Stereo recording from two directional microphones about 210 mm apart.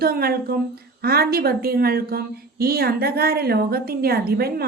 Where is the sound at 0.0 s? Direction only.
45° right (ahead or behind).